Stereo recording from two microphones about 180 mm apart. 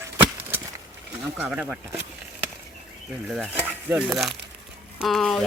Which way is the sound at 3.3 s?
10° right (ahead or behind).